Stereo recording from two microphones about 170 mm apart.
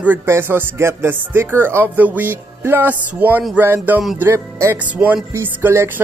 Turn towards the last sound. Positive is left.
turn(degrees=-10)  # may be behind; listen again after turning